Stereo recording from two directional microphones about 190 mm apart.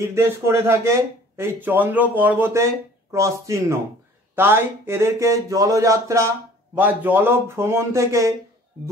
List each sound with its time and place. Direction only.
0.0 s speech: 15° right (ahead or behind)